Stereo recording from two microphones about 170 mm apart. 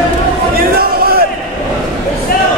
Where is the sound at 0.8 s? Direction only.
60° right (ahead or behind).